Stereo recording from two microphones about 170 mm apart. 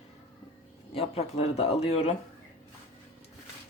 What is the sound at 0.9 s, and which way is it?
Speech, 35° left (ahead or behind).